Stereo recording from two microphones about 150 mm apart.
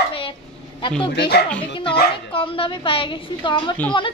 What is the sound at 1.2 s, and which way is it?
Speech, 90° left.